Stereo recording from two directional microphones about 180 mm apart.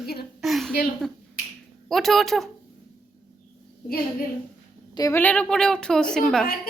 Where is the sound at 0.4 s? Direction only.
Centre (ahead or behind).